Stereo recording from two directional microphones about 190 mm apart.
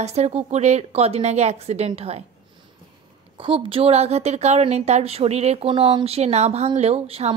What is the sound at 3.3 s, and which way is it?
A woman's voice, 30° right (ahead or behind).